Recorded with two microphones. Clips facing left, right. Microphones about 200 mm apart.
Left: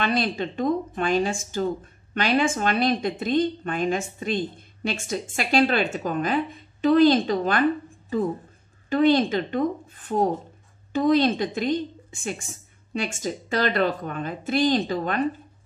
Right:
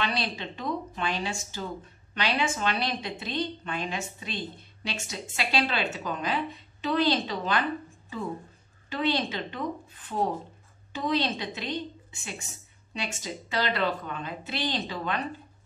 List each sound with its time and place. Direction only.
0.0 s a woman's voice: 50° left (ahead or behind)
8.8 s a woman's voice: 50° left (ahead or behind)